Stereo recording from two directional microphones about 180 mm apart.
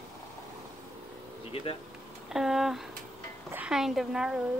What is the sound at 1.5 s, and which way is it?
Speech, 30° left (ahead or behind).